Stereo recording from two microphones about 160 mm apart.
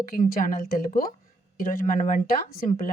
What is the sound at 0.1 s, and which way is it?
Speech, 60° left (ahead or behind).